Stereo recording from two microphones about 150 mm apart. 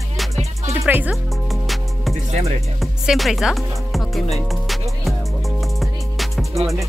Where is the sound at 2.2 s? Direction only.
45° right (ahead or behind).